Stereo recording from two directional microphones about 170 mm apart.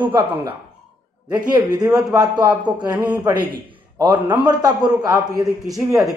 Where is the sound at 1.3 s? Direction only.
25° right (ahead or behind).